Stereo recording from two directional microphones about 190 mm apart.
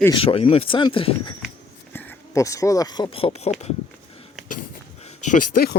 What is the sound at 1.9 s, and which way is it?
Speech, 15° left (ahead or behind).